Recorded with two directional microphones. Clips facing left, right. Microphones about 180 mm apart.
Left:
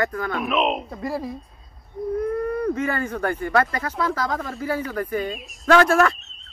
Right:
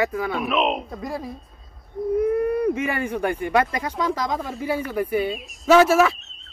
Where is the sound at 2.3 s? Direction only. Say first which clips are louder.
Right 3 dB; 15° right (ahead or behind).